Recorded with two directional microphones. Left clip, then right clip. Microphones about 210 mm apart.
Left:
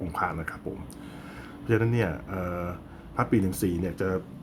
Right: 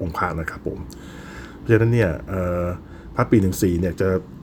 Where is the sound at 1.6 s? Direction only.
20° right (ahead or behind).